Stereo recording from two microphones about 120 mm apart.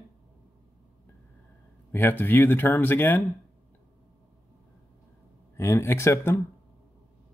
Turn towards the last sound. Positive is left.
turn(degrees=20)  # may be behind; listen again after turning